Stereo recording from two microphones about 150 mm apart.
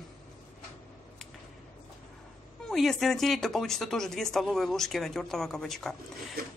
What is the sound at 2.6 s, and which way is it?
A woman's voice, centre (ahead or behind).